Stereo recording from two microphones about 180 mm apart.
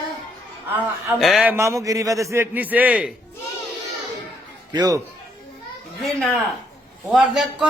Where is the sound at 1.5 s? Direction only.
15° right (ahead or behind).